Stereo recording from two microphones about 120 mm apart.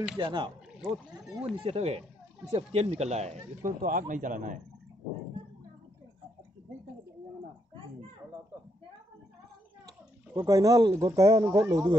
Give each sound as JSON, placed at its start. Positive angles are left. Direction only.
{"t": 0.2, "sound": "speech", "side_deg": -40}
{"t": 1.4, "sound": "speech", "side_deg": -55}
{"t": 9.8, "sound": "speech", "side_deg": -30}